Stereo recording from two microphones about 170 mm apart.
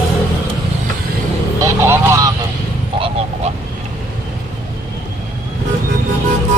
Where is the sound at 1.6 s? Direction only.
15° right (ahead or behind).